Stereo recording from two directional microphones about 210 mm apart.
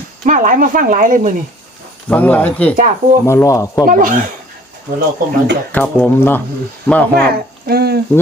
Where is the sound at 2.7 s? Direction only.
40° right (ahead or behind).